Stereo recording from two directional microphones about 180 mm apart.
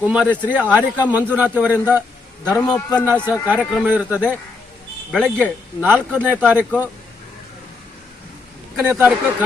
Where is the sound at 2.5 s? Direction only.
20° left (ahead or behind).